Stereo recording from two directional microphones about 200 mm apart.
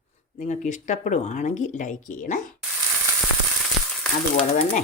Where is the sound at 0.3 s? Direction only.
40° left (ahead or behind).